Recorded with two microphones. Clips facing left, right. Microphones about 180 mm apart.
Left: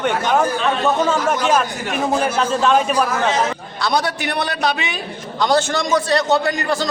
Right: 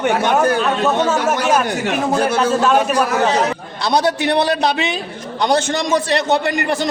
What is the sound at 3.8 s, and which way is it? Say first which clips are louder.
A man's voice: right 4 dB; 25° right (ahead or behind).